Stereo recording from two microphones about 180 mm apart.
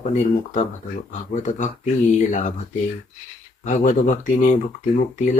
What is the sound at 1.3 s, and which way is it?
Speech, 45° left (ahead or behind).